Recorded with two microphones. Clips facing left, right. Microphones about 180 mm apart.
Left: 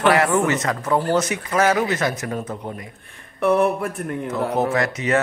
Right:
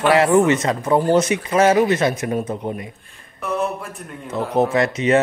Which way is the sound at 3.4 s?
60° left (ahead or behind).